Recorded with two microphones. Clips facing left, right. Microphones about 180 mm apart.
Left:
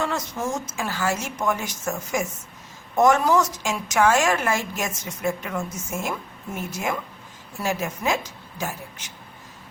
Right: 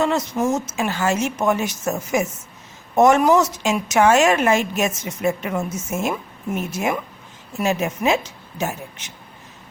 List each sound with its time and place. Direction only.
0.0 s a woman's voice: 20° right (ahead or behind)